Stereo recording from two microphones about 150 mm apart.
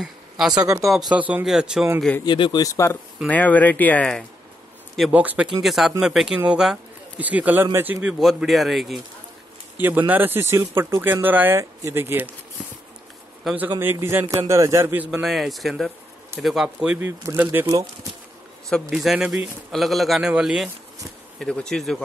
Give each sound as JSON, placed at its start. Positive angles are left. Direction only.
{"t": 0.5, "sound": "a man's voice", "side_deg": -25}
{"t": 0.8, "sound": "speech", "side_deg": 0}
{"t": 2.2, "sound": "speech", "side_deg": 30}
{"t": 3.3, "sound": "speech", "side_deg": 10}
{"t": 5.1, "sound": "speech", "side_deg": -10}
{"t": 9.8, "sound": "speech", "side_deg": -10}
{"t": 13.7, "sound": "a man's voice", "side_deg": -15}
{"t": 15.0, "sound": "speech", "side_deg": 0}
{"t": 18.9, "sound": "speech", "side_deg": -5}